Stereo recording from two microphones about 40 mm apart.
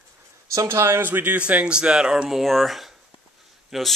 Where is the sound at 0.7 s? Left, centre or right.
Right.